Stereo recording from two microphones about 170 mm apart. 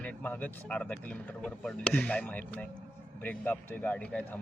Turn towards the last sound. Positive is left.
turn(degrees=10)  # may be behind; listen again after turning